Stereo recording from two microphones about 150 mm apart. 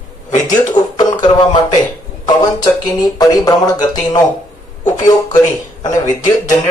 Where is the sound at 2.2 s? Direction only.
25° left (ahead or behind).